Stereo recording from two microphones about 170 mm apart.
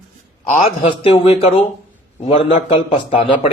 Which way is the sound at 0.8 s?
30° left (ahead or behind).